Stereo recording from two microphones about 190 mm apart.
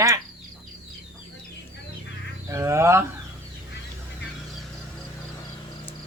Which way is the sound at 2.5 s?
15° right (ahead or behind).